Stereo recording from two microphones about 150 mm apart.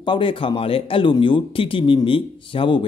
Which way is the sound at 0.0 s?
35° left (ahead or behind).